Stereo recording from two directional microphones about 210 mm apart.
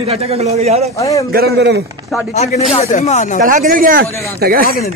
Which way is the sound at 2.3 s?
30° left (ahead or behind).